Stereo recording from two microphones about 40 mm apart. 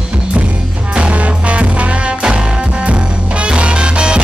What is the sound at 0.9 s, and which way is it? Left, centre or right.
Music, right.